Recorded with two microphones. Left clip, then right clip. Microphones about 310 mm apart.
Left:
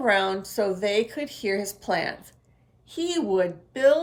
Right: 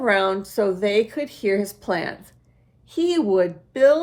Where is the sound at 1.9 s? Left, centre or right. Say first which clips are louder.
Left 1 dB; centre.